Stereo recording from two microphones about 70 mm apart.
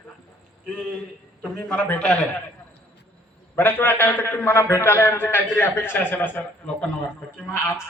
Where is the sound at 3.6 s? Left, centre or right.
Left.